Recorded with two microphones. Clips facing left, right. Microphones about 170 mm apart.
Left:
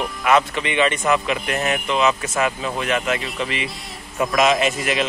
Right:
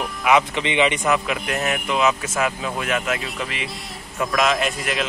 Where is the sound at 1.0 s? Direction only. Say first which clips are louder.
Left 1 dB; 5° right (ahead or behind).